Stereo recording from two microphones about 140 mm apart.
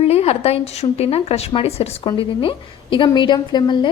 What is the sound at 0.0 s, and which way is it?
A woman's voice, 45° left (ahead or behind).